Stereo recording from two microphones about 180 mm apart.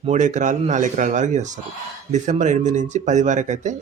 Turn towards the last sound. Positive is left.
turn(degrees=-40)  # may be behind; listen again after turning